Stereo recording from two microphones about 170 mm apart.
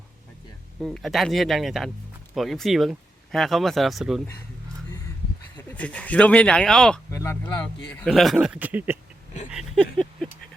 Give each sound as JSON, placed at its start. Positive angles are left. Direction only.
{"t": 0.8, "sound": "speech", "side_deg": 0}
{"t": 5.7, "sound": "speech", "side_deg": 10}
{"t": 7.1, "sound": "speech", "side_deg": 15}
{"t": 8.0, "sound": "speech", "side_deg": 0}
{"t": 9.5, "sound": "a sound", "side_deg": 0}